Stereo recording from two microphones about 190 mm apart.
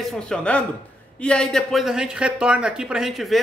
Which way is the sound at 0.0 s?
Centre (ahead or behind).